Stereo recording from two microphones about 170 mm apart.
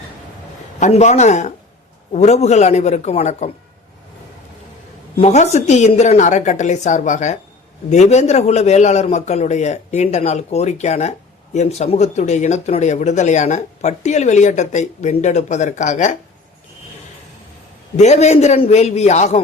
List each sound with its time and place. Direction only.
0.8 s a man's voice: 40° left (ahead or behind)
5.1 s a man's voice: 40° left (ahead or behind)
17.9 s a man's voice: 40° left (ahead or behind)